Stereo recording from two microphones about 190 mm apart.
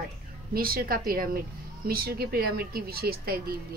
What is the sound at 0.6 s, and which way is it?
Speech, 50° right (ahead or behind).